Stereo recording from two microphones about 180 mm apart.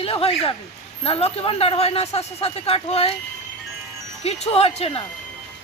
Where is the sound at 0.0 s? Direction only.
30° left (ahead or behind).